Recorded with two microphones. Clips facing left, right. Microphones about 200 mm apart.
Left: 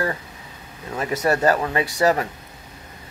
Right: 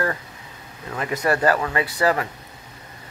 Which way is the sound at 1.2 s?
25° left (ahead or behind).